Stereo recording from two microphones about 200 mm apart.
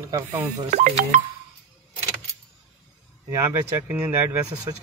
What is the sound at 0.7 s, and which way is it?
Speech, 35° right (ahead or behind).